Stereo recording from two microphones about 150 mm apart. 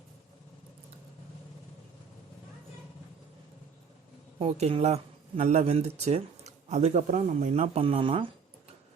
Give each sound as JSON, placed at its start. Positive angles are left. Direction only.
{"t": 4.4, "sound": "speech", "side_deg": -45}